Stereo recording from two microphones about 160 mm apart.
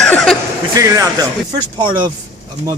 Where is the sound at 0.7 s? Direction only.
20° right (ahead or behind).